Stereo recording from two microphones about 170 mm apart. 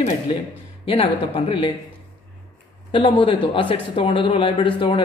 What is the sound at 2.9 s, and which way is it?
Speech, 30° left (ahead or behind).